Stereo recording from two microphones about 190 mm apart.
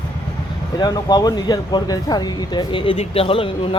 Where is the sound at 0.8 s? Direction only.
20° left (ahead or behind).